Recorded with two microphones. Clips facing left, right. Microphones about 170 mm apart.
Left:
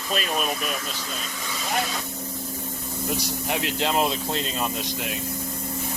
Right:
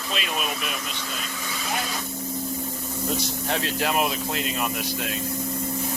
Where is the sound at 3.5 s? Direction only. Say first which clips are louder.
Even; 15° left (ahead or behind).